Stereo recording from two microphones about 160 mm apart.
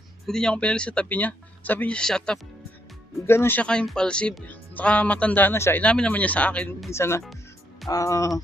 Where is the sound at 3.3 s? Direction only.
15° left (ahead or behind).